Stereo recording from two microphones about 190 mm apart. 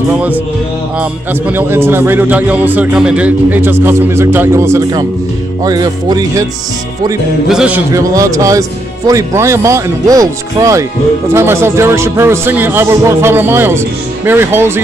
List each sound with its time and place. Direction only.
1.5 s a man's voice: 10° right (ahead or behind)
7.4 s music: 5° right (ahead or behind)
7.9 s a man's voice: 15° right (ahead or behind)